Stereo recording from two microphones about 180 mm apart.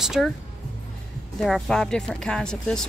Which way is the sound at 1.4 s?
Centre (ahead or behind).